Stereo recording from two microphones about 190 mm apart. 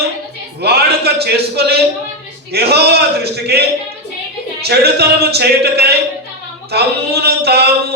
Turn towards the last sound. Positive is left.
turn(degrees=-60)  # may be behind; listen again after turning